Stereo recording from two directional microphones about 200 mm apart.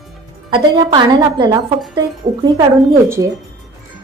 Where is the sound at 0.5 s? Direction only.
20° right (ahead or behind).